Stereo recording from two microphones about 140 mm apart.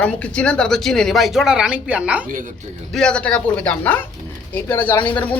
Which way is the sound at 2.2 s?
70° right (ahead or behind).